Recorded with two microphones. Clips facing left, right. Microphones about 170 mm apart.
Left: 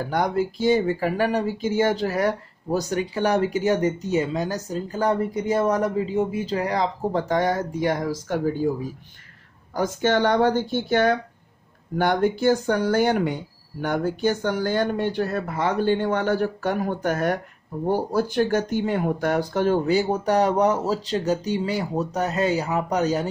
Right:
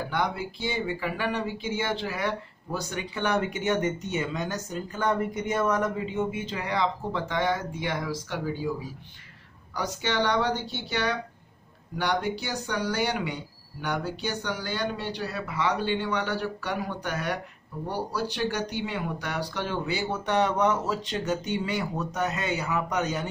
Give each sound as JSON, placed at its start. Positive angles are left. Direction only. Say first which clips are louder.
{"t": 0.0, "sound": "speech", "louder": "left 6 dB", "side_deg": 45}